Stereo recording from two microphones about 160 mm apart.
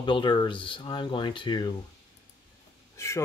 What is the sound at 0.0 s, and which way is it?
Speech, 30° left (ahead or behind).